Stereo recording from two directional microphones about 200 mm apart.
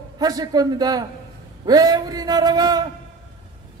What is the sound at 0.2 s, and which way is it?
A man's voice, 20° right (ahead or behind).